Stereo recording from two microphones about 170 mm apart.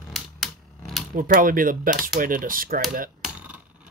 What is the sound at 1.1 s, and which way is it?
Speech, 50° right (ahead or behind).